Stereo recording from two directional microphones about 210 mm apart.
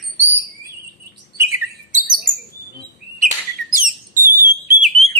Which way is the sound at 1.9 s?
40° right (ahead or behind).